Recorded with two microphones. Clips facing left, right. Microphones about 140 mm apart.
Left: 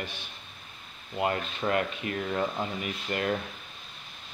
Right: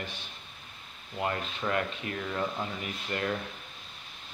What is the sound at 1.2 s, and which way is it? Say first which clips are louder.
Speech: left 3 dB; 20° left (ahead or behind).